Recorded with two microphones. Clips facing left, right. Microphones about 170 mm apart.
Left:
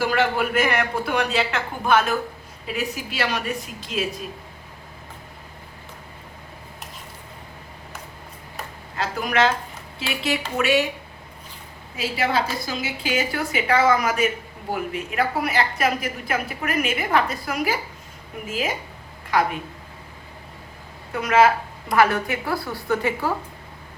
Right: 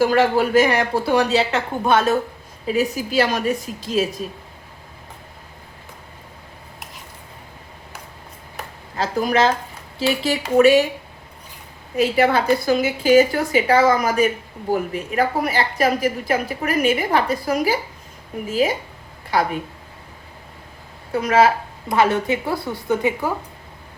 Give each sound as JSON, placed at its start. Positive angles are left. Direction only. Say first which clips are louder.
{"t": 0.1, "sound": "a woman's voice", "louder": "right 6 dB", "side_deg": -35}
{"t": 9.2, "sound": "a woman's voice", "louder": "right 2 dB", "side_deg": -35}
{"t": 11.9, "sound": "a woman's voice", "louder": "right 7 dB", "side_deg": -55}
{"t": 21.1, "sound": "a woman's voice", "louder": "right 2 dB", "side_deg": -35}